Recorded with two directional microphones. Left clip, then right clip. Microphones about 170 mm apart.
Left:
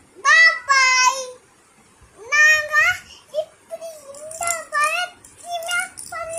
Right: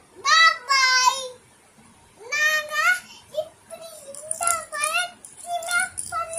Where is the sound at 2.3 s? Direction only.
5° left (ahead or behind).